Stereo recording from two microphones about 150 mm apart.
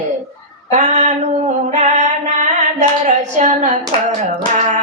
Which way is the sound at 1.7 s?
50° right (ahead or behind).